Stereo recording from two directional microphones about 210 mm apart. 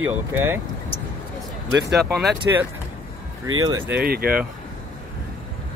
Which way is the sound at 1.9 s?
Centre (ahead or behind).